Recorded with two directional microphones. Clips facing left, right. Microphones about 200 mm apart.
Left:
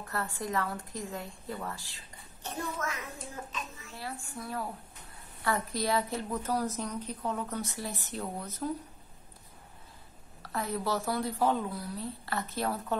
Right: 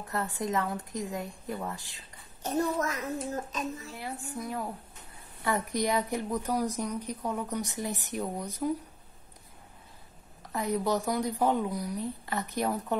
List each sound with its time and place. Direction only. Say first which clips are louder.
0.0 s a woman's voice: right 3 dB; 20° right (ahead or behind)
2.4 s a child's voice: right 8 dB; 40° right (ahead or behind)
3.9 s a woman's voice: right 3 dB; 20° right (ahead or behind)
10.4 s a woman's voice: right 4 dB; 15° right (ahead or behind)